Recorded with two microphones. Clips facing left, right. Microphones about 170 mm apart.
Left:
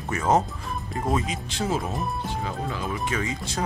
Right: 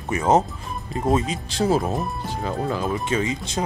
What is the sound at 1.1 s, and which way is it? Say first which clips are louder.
Speech: right 5 dB; 35° right (ahead or behind).